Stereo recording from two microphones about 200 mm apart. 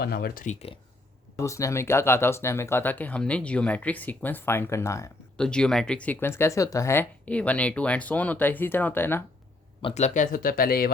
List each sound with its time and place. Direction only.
0.0 s speech: 50° left (ahead or behind)
1.4 s speech: 15° left (ahead or behind)
5.4 s speech: 5° left (ahead or behind)
9.8 s speech: 35° left (ahead or behind)